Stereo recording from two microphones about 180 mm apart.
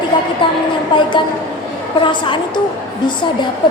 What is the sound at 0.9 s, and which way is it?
A woman's voice, 25° left (ahead or behind).